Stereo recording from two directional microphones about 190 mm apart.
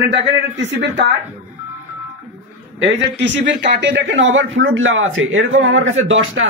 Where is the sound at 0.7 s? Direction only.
70° right (ahead or behind).